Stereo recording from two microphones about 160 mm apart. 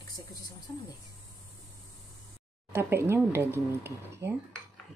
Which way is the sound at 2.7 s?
15° right (ahead or behind).